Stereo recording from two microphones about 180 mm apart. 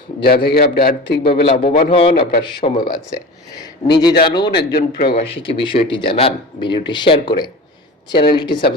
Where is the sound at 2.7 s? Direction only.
50° left (ahead or behind).